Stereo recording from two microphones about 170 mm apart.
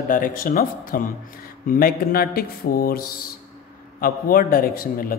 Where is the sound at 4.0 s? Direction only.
60° left (ahead or behind).